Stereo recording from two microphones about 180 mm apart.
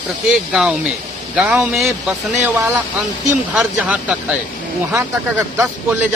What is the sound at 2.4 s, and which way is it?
Speech, 10° right (ahead or behind).